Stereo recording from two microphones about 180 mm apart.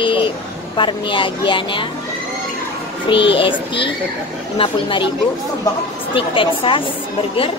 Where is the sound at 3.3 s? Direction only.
30° left (ahead or behind).